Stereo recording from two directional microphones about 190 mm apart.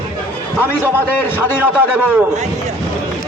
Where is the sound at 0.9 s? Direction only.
10° left (ahead or behind).